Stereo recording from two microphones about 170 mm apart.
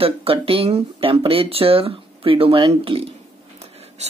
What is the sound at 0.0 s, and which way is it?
Speech, 35° right (ahead or behind).